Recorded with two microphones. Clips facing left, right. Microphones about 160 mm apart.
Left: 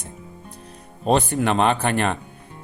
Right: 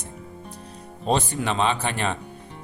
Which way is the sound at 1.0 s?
55° left (ahead or behind).